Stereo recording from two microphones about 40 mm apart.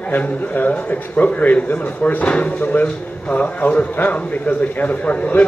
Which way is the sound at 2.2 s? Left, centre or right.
Left.